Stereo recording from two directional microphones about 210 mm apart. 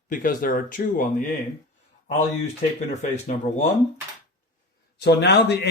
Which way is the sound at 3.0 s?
35° left (ahead or behind).